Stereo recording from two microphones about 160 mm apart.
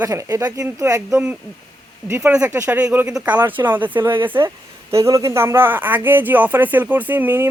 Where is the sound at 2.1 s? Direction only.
15° right (ahead or behind).